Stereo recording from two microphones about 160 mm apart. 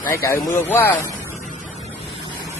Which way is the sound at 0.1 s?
20° left (ahead or behind).